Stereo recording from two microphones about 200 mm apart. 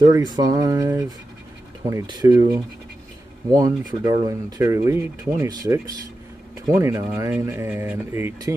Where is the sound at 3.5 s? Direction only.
20° right (ahead or behind).